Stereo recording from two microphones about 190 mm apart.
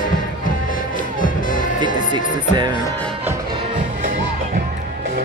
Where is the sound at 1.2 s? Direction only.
45° left (ahead or behind).